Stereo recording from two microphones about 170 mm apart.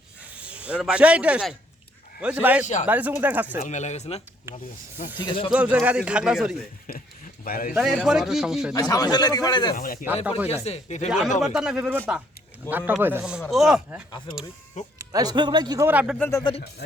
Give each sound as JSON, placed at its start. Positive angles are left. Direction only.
{"t": 0.3, "sound": "speech", "side_deg": -5}
{"t": 3.6, "sound": "speech", "side_deg": 45}
{"t": 5.2, "sound": "speech", "side_deg": 30}
{"t": 5.5, "sound": "speech", "side_deg": -5}
{"t": 7.4, "sound": "a man's voice", "side_deg": 60}
{"t": 7.7, "sound": "speech", "side_deg": -5}
{"t": 8.7, "sound": "speech", "side_deg": 20}
{"t": 9.7, "sound": "speech", "side_deg": 55}
{"t": 10.5, "sound": "speech", "side_deg": 40}
{"t": 11.3, "sound": "speech", "side_deg": -5}
{"t": 14.9, "sound": "speech", "side_deg": -20}
{"t": 15.9, "sound": "speech", "side_deg": -10}
{"t": 16.1, "sound": "speech", "side_deg": 10}
{"t": 16.4, "sound": "speech", "side_deg": 30}